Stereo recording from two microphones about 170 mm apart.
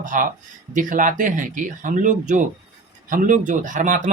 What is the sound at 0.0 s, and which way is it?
Speech, 50° right (ahead or behind).